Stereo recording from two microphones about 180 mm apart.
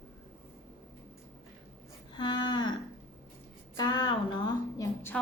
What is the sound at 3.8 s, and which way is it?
A woman's voice, 20° left (ahead or behind).